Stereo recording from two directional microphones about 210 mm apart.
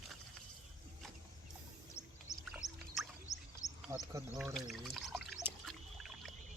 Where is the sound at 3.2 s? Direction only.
15° left (ahead or behind).